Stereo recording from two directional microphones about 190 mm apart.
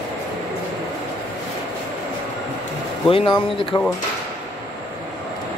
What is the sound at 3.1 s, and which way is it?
Speech, 25° left (ahead or behind).